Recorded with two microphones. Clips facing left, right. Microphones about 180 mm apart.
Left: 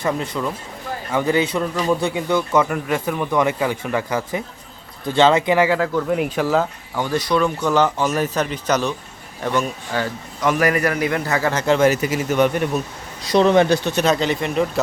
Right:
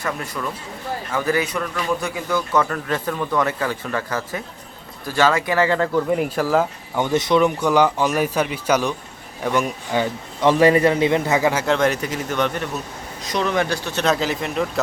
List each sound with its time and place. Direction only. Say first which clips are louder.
0.0 s a man's voice: left 4 dB; 20° left (ahead or behind); by 6.7 s 5° right (ahead or behind)
6.9 s speech: right 2 dB; 20° right (ahead or behind)
10.4 s a man's voice: right 4 dB; 30° right (ahead or behind)
11.6 s a man's voice: left 3 dB; 5° left (ahead or behind)
13.2 s speech: left 7 dB; 30° left (ahead or behind)
14.0 s speech: left 2 dB; centre (ahead or behind)